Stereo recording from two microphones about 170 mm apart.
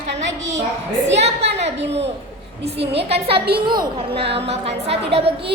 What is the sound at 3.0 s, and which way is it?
A woman's voice, 35° right (ahead or behind).